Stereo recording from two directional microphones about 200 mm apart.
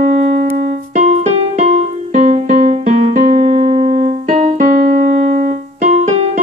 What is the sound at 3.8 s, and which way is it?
Keyboard, 35° right (ahead or behind).